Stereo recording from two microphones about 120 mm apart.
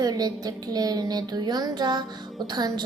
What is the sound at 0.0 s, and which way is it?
Speech, 35° right (ahead or behind).